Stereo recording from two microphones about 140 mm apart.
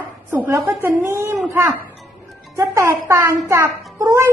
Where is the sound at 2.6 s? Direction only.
20° right (ahead or behind).